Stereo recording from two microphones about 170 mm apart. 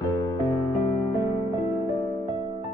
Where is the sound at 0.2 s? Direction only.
20° left (ahead or behind).